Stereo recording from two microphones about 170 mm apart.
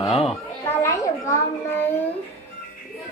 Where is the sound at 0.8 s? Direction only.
20° left (ahead or behind).